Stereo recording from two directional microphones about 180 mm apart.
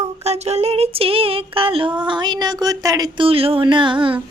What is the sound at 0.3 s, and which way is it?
Child singing, 35° right (ahead or behind).